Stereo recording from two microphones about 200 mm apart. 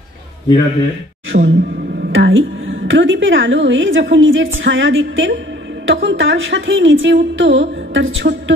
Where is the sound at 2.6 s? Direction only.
70° right (ahead or behind).